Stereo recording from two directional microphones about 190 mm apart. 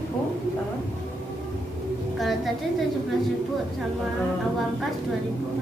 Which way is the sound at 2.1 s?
Centre (ahead or behind).